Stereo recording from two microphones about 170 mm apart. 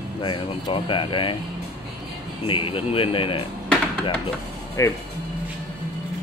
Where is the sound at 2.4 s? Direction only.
30° left (ahead or behind).